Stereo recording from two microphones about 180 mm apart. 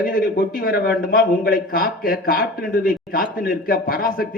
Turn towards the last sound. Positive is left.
turn(degrees=55)  # may be behind; listen again after turning